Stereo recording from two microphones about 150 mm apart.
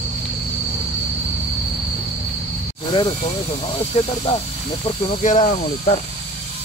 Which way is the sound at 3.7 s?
35° left (ahead or behind).